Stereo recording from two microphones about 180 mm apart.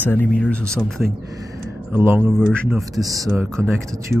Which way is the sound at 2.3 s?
5° left (ahead or behind).